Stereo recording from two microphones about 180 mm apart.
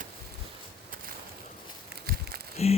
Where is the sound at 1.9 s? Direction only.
60° right (ahead or behind).